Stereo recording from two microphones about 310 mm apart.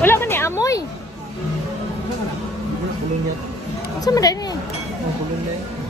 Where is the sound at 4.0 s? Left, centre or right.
Centre.